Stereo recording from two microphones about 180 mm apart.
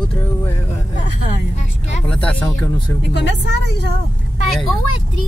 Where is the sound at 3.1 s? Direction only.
75° left (ahead or behind).